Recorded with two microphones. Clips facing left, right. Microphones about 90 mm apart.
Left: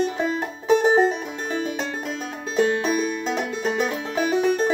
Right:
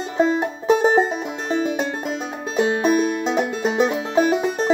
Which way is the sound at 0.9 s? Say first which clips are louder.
Even; 20° right (ahead or behind).